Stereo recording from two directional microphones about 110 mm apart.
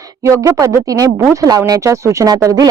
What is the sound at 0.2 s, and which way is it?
Speech, 25° right (ahead or behind).